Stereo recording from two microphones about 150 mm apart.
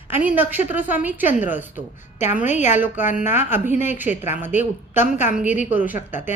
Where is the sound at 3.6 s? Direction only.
15° right (ahead or behind).